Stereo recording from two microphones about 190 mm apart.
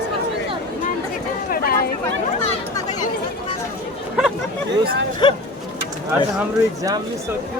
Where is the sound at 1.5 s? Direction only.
50° left (ahead or behind).